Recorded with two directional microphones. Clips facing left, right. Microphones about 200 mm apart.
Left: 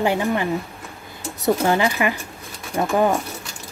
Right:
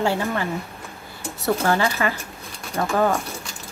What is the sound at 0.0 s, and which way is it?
Speech, 15° left (ahead or behind).